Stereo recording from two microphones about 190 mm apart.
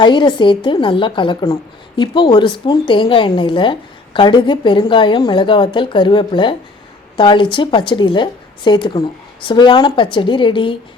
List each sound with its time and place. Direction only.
0.0 s a woman's voice: 25° left (ahead or behind)